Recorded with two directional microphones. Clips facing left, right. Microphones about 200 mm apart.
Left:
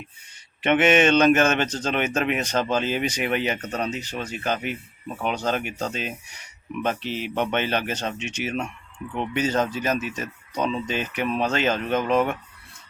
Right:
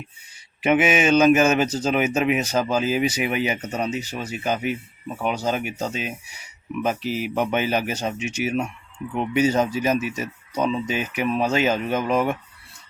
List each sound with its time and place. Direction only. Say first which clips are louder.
0.6 s speech: left 1 dB; 10° right (ahead or behind)